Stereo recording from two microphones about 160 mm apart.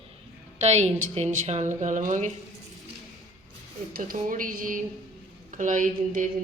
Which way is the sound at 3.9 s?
60° right (ahead or behind).